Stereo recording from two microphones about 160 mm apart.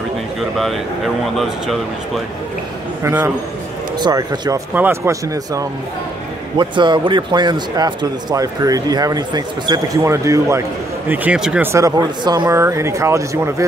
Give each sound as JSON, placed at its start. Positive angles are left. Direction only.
{"t": 0.4, "sound": "speech", "side_deg": 0}
{"t": 3.0, "sound": "a man's voice", "side_deg": -15}
{"t": 4.7, "sound": "a man's voice", "side_deg": -15}
{"t": 11.1, "sound": "speech", "side_deg": -5}
{"t": 11.7, "sound": "a man's voice", "side_deg": -20}